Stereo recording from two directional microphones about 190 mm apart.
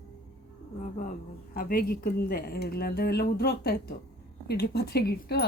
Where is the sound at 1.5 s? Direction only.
50° left (ahead or behind).